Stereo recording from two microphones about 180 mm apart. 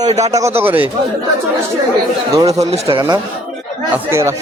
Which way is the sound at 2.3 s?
20° right (ahead or behind).